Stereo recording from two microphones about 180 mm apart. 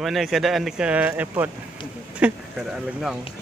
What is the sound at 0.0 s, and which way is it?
Speech, centre (ahead or behind).